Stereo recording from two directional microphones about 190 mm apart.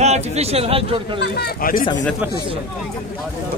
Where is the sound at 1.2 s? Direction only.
55° left (ahead or behind).